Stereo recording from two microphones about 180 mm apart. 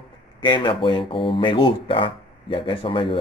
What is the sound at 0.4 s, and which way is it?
Speech, 25° left (ahead or behind).